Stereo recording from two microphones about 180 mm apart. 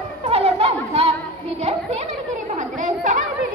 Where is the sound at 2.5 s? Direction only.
45° right (ahead or behind).